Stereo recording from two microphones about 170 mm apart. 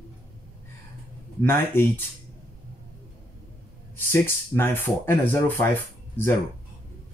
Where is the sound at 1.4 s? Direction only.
15° left (ahead or behind).